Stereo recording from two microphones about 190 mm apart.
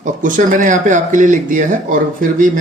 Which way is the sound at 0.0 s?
45° right (ahead or behind).